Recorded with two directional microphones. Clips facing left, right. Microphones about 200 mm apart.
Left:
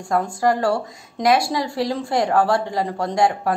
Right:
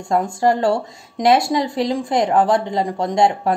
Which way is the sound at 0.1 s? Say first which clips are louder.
Right 2 dB; 25° right (ahead or behind).